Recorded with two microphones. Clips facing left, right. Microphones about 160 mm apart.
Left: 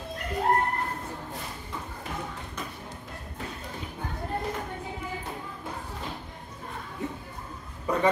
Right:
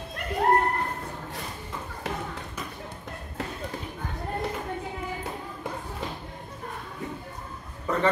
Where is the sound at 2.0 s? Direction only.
90° right.